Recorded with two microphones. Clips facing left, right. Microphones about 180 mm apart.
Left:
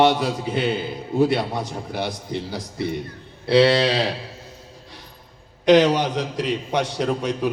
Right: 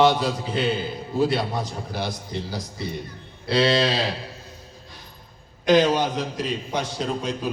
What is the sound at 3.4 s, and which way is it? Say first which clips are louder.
Speech: left 4 dB; 65° left (ahead or behind).